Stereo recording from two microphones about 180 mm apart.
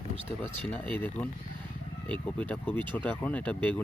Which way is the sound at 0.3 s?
10° left (ahead or behind).